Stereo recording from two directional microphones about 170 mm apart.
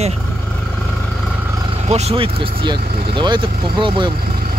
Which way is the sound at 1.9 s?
40° right (ahead or behind).